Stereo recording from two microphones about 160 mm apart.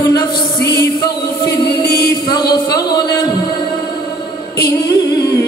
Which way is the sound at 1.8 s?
85° left.